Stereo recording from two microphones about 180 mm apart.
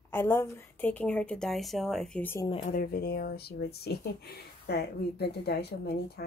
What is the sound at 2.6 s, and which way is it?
Speech, 50° left (ahead or behind).